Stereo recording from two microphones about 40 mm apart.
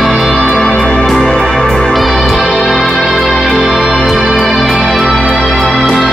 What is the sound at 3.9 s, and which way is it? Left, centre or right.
Music, centre.